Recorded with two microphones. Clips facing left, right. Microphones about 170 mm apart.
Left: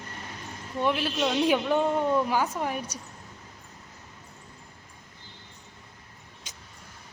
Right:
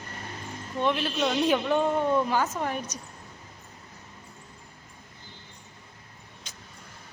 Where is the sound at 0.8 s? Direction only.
10° left (ahead or behind).